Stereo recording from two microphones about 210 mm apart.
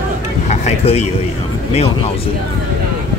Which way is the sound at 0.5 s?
30° left (ahead or behind).